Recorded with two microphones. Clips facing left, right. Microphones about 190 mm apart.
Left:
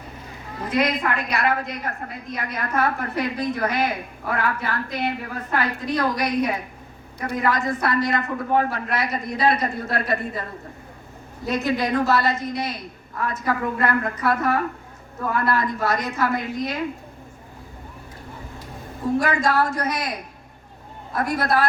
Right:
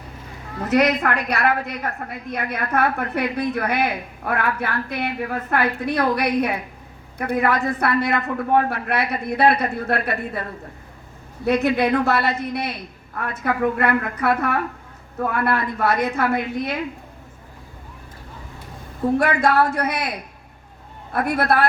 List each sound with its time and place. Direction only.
0.7 s a woman's voice: 75° right (ahead or behind); by 10.4 s 60° right (ahead or behind)
11.4 s a woman's voice: 60° right (ahead or behind)
19.1 s a woman's voice: 60° right (ahead or behind)
21.1 s a woman's voice: 60° right (ahead or behind)